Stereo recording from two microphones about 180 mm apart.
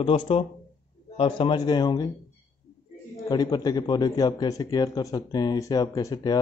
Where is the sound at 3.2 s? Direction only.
20° left (ahead or behind).